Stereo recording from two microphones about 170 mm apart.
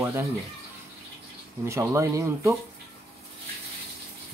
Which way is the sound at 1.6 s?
15° right (ahead or behind).